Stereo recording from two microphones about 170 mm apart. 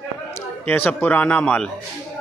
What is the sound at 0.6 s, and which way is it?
A man's voice, 10° left (ahead or behind).